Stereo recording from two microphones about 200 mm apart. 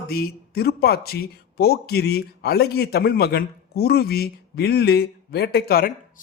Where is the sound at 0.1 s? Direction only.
50° left (ahead or behind).